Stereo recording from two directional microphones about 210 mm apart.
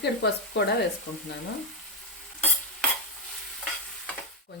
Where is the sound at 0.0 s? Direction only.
55° left (ahead or behind).